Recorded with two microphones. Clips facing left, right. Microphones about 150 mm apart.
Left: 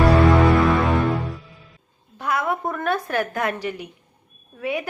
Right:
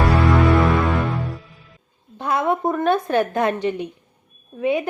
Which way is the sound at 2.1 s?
25° right (ahead or behind).